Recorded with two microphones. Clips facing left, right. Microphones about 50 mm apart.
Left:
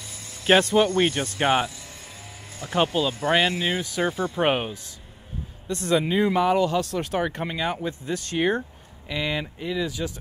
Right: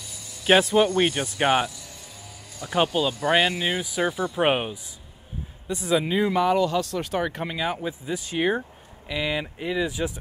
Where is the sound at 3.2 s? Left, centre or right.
Centre.